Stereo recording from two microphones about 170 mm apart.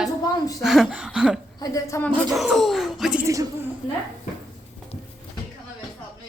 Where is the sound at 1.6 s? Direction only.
20° left (ahead or behind).